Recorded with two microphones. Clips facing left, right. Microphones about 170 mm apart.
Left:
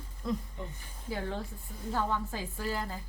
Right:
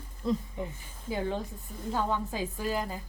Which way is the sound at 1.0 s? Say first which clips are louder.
Right 4 dB; 20° right (ahead or behind).